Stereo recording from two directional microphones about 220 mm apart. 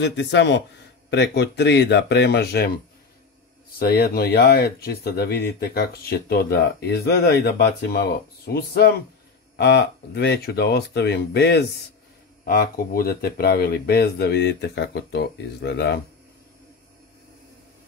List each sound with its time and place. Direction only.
0.0 s speech: 50° left (ahead or behind)
3.8 s speech: 45° left (ahead or behind)